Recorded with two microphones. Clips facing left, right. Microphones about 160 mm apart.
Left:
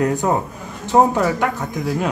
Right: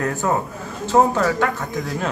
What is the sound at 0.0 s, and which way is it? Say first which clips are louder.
Speech: left 3 dB; 15° left (ahead or behind).